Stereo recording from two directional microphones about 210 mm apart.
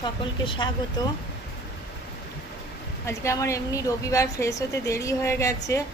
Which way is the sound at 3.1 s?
15° left (ahead or behind).